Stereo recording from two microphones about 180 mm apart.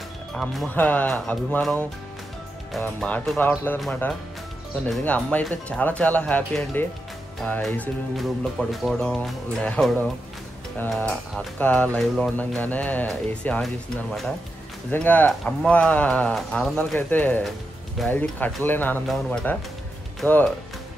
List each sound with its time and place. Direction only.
0.3 s speech: centre (ahead or behind)
14.9 s speech: 10° left (ahead or behind)